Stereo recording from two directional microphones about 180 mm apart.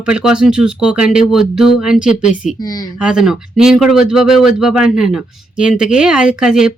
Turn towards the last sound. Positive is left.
turn(degrees=-5)  # may be behind; listen again after turning